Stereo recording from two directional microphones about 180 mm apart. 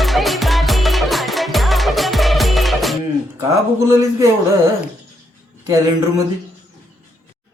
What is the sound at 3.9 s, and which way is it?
Speech, 15° right (ahead or behind).